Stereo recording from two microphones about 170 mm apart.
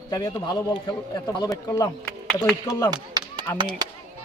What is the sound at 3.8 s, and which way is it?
Speech, 25° right (ahead or behind).